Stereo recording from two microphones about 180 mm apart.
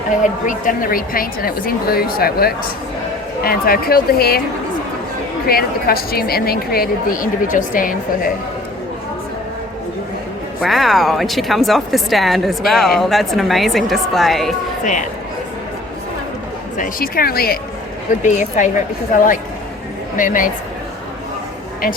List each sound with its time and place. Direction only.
0.2 s a woman's voice: 45° left (ahead or behind)
5.5 s a woman's voice: 55° left (ahead or behind)
10.6 s speech: centre (ahead or behind)
16.7 s a woman's voice: 50° left (ahead or behind)
18.2 s a woman's voice: 45° left (ahead or behind)
20.1 s a woman's voice: 50° left (ahead or behind)